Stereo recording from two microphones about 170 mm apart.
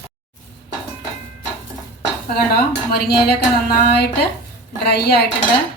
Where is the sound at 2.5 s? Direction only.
70° left (ahead or behind).